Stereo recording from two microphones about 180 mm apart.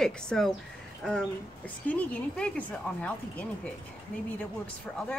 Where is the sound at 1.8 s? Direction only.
5° left (ahead or behind).